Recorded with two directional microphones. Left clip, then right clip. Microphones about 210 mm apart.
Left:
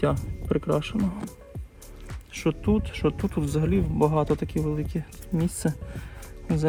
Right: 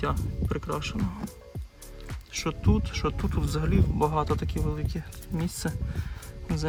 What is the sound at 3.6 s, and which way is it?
Speech, 35° right (ahead or behind).